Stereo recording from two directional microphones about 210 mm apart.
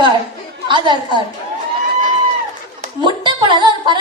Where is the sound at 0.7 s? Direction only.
20° right (ahead or behind).